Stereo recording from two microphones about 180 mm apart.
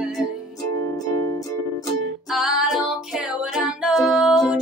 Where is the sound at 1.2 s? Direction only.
15° left (ahead or behind).